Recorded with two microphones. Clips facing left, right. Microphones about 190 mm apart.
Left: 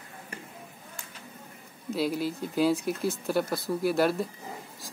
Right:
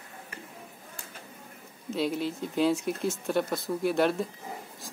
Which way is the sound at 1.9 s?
5° left (ahead or behind).